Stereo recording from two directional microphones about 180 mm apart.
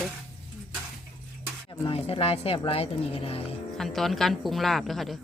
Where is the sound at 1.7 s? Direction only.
30° left (ahead or behind).